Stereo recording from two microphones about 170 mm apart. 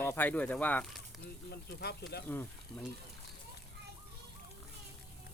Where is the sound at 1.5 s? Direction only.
75° left (ahead or behind).